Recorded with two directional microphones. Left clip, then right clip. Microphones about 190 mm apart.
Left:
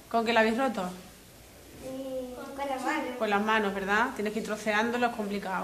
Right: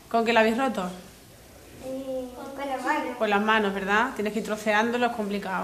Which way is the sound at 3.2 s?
10° right (ahead or behind).